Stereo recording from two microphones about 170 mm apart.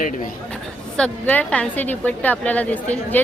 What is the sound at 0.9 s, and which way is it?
A woman's voice, 5° left (ahead or behind).